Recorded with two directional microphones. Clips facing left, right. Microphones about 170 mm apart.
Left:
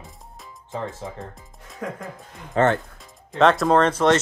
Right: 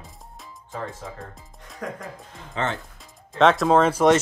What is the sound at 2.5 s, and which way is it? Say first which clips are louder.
Speech: left 8 dB; 50° left (ahead or behind).